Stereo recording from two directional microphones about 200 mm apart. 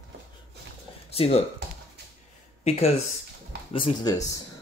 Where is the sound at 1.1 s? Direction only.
30° left (ahead or behind).